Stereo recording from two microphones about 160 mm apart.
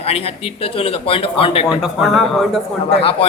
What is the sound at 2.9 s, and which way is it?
Speech, 35° left (ahead or behind).